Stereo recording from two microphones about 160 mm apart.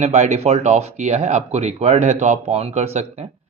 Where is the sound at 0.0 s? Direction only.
45° right (ahead or behind).